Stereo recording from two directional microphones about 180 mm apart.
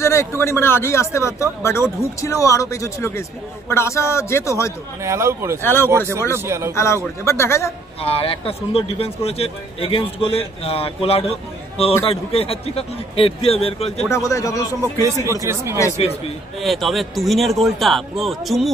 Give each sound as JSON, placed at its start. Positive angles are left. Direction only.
{"t": 0.0, "sound": "speech", "side_deg": 15}
{"t": 5.0, "sound": "speech", "side_deg": -15}
{"t": 5.6, "sound": "speech", "side_deg": 10}
{"t": 6.3, "sound": "speech", "side_deg": -15}
{"t": 6.7, "sound": "speech", "side_deg": 15}
{"t": 8.0, "sound": "a man's voice", "side_deg": 30}
{"t": 14.1, "sound": "speech", "side_deg": 15}
{"t": 15.4, "sound": "speech", "side_deg": -15}
{"t": 16.6, "sound": "a man's voice", "side_deg": 0}